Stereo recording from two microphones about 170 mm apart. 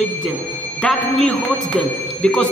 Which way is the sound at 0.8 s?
5° left (ahead or behind).